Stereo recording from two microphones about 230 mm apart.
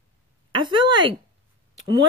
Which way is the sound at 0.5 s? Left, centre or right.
Right.